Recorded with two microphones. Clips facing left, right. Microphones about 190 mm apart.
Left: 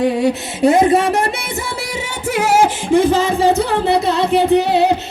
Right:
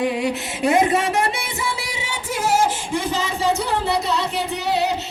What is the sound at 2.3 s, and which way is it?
Singing, 70° left (ahead or behind).